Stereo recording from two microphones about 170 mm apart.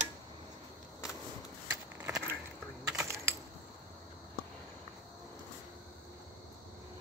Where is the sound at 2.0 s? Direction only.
15° right (ahead or behind).